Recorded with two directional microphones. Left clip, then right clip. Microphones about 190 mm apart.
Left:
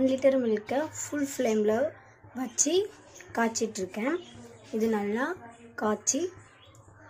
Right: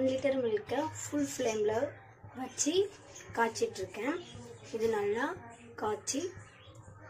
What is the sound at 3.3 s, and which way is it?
A woman's voice, 55° left (ahead or behind).